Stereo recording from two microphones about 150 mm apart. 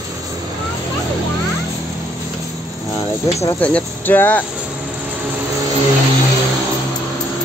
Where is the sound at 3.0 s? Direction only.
20° left (ahead or behind).